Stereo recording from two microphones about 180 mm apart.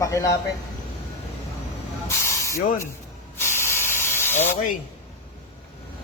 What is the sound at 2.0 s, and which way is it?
Hiss, 15° left (ahead or behind).